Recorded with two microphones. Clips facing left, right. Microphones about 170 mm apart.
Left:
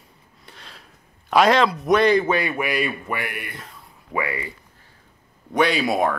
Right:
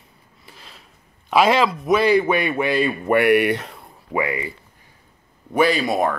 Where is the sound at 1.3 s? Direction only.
5° right (ahead or behind).